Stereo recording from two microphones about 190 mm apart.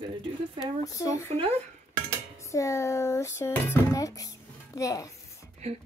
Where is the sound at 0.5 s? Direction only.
20° left (ahead or behind).